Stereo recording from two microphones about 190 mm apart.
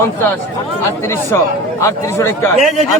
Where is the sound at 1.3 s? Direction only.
15° left (ahead or behind).